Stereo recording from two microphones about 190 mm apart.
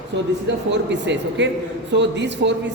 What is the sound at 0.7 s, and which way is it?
A man's voice, 65° right (ahead or behind).